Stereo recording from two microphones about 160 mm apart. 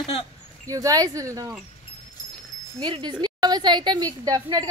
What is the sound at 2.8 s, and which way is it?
A woman's voice, 30° right (ahead or behind).